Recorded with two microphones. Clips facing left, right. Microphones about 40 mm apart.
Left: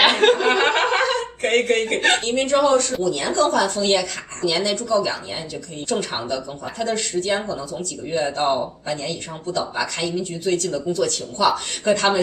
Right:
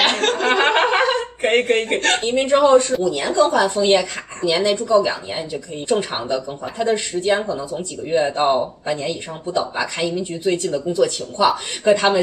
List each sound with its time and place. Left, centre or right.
0.0 s a sound: centre
0.7 s chuckle: centre
2.1 s a woman's voice: centre